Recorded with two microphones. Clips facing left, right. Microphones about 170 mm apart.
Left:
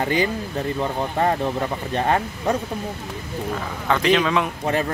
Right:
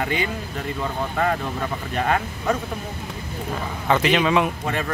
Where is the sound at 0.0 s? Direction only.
35° left (ahead or behind).